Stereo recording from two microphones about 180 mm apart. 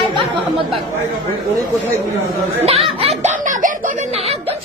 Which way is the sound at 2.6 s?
35° right (ahead or behind).